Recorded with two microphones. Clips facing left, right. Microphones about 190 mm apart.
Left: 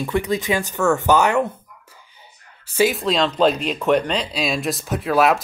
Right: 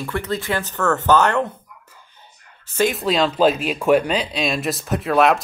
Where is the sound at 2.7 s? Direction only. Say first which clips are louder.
Left 1 dB; 5° left (ahead or behind).